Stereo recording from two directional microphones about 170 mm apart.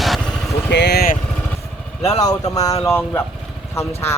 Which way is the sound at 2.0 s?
20° left (ahead or behind).